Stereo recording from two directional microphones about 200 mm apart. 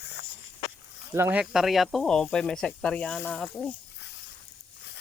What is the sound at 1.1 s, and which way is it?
Speech, 10° right (ahead or behind).